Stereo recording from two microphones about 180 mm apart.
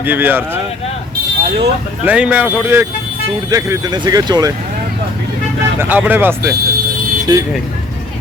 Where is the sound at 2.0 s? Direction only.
5° right (ahead or behind).